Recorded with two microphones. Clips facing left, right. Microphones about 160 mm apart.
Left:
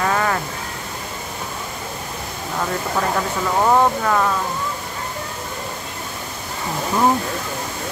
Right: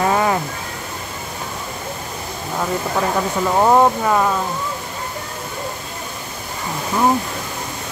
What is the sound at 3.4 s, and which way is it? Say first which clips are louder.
Speech: right 3 dB; 15° right (ahead or behind).